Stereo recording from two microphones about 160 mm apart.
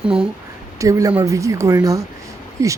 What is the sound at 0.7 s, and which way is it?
Speech, 20° right (ahead or behind).